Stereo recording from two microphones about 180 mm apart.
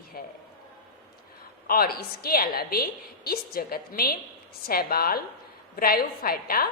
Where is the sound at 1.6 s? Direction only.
55° left (ahead or behind).